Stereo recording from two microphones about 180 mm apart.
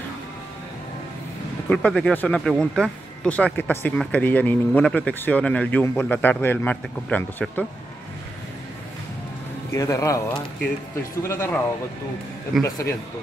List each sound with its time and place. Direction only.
1.7 s speech: 5° left (ahead or behind)
9.8 s speech: 15° left (ahead or behind)
12.6 s speech: 20° left (ahead or behind)